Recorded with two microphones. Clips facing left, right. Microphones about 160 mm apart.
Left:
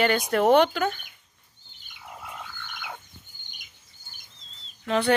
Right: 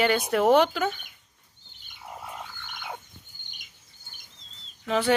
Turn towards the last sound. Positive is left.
turn(degrees=-5)  # may be behind; listen again after turning